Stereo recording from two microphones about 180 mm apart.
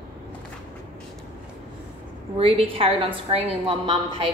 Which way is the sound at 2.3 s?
30° right (ahead or behind).